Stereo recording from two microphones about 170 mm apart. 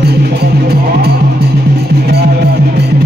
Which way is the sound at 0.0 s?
70° right (ahead or behind).